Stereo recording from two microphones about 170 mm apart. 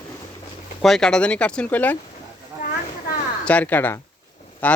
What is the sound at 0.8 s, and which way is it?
Speech, centre (ahead or behind).